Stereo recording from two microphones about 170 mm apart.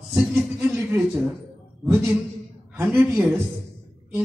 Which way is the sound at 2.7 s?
15° right (ahead or behind).